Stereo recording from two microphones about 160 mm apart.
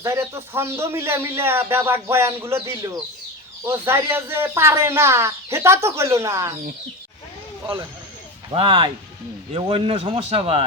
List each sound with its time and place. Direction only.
0.0 s a man's voice: 15° right (ahead or behind)
8.5 s a man's voice: 30° right (ahead or behind)